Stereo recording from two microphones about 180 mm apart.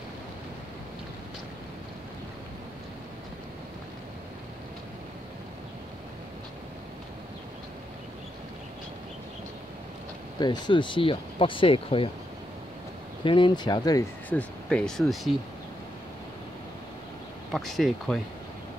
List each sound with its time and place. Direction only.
10.4 s speech: 25° left (ahead or behind)
13.2 s speech: 25° left (ahead or behind)
14.3 s speech: 5° left (ahead or behind)
17.5 s speech: centre (ahead or behind)